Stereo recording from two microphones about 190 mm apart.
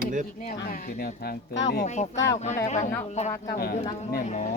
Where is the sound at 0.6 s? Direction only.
50° left (ahead or behind).